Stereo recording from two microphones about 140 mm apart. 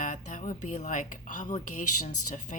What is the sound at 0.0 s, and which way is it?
A woman's voice, 65° left (ahead or behind).